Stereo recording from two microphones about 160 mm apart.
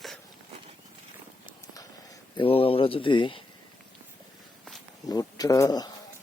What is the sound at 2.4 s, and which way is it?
Speech, 35° left (ahead or behind).